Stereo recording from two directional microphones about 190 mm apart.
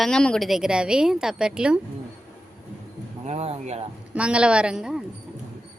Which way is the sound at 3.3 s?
35° right (ahead or behind).